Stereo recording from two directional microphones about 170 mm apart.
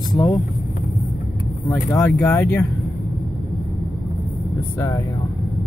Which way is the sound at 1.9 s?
15° left (ahead or behind).